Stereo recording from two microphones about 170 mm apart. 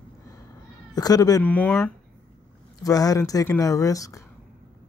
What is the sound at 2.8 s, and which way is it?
Speech, 20° left (ahead or behind).